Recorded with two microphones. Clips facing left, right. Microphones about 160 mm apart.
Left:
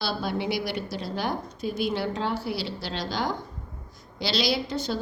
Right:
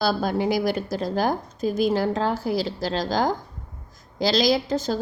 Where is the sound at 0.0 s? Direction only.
45° right (ahead or behind).